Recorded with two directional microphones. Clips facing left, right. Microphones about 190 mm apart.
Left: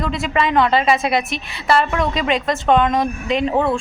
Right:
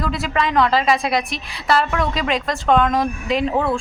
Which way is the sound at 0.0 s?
Centre (ahead or behind).